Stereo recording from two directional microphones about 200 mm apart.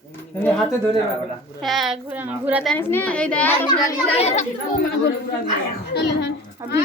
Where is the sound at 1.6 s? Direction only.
Centre (ahead or behind).